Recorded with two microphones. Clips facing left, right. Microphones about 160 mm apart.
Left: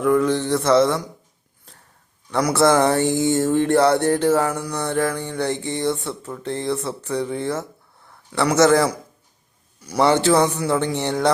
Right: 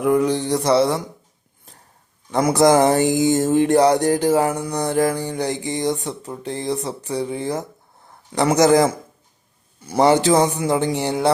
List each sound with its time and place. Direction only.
0.0 s speech: 20° right (ahead or behind)
0.3 s mantra: 35° right (ahead or behind)
2.3 s a man's voice: 15° right (ahead or behind)
10.1 s speech: 15° right (ahead or behind)